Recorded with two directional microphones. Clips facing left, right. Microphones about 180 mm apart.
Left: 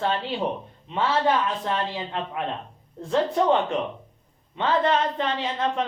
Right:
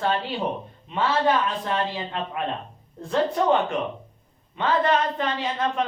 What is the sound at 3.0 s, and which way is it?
Speech, 25° left (ahead or behind).